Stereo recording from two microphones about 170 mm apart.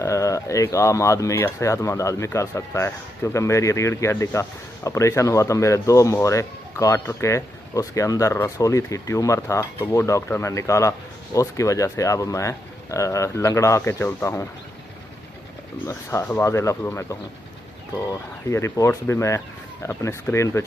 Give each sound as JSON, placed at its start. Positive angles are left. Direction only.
{"t": 0.0, "sound": "a man's voice", "side_deg": 20}
{"t": 15.9, "sound": "a man's voice", "side_deg": 15}